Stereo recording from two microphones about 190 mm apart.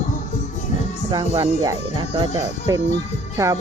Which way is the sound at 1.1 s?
25° right (ahead or behind).